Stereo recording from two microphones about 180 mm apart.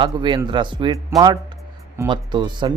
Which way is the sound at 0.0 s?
25° right (ahead or behind).